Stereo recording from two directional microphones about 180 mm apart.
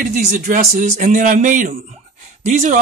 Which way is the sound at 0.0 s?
45° right (ahead or behind).